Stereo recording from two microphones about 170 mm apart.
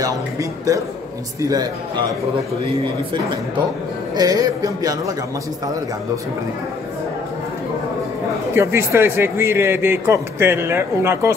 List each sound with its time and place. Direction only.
0.0 s speech: 20° right (ahead or behind)
4.1 s speech: 25° right (ahead or behind)
8.5 s speech: 15° right (ahead or behind)